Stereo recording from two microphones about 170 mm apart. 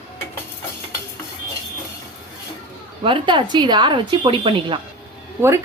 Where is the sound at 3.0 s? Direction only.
30° right (ahead or behind).